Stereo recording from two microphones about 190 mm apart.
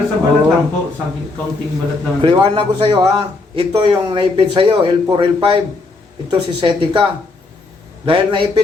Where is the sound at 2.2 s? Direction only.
25° right (ahead or behind).